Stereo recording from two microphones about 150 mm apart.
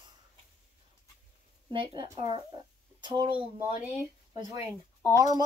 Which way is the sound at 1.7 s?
35° right (ahead or behind).